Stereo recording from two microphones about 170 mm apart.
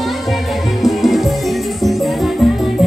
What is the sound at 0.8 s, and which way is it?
Music, centre (ahead or behind).